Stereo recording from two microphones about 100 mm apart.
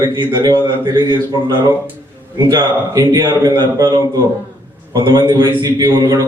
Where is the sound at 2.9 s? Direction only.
40° right (ahead or behind).